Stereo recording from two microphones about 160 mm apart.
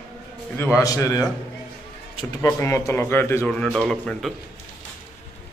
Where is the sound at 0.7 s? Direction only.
20° left (ahead or behind).